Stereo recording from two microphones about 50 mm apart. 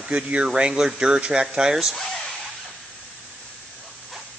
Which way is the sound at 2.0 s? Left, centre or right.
Centre.